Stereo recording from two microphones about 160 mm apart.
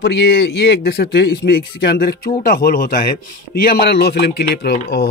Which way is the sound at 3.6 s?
80° left.